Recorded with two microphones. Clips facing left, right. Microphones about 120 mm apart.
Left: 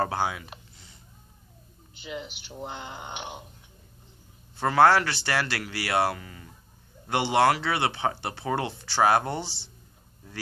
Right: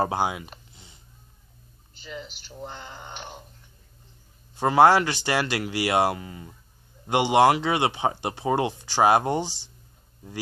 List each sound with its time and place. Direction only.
0.0 s speech: 15° right (ahead or behind)
2.0 s speech: 10° left (ahead or behind)
4.6 s speech: 15° right (ahead or behind)